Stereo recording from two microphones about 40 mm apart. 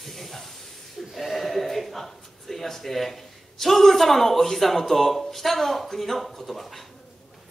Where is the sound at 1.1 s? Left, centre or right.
Centre.